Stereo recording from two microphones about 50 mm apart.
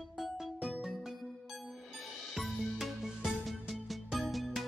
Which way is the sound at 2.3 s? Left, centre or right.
Centre.